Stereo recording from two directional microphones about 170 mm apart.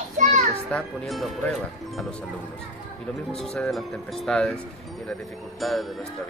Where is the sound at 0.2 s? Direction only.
50° right (ahead or behind).